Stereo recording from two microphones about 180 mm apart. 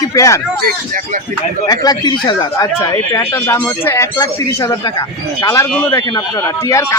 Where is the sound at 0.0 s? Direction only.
20° left (ahead or behind).